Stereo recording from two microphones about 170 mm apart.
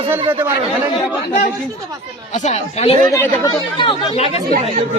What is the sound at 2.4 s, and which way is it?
Speech, 40° left (ahead or behind).